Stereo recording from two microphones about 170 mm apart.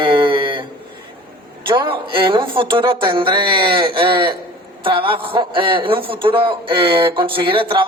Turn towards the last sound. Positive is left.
turn(degrees=-30)  # may be behind; listen again after turning